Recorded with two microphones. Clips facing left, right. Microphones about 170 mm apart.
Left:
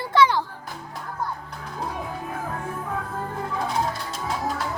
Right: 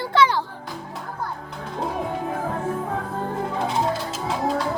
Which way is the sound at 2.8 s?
30° right (ahead or behind).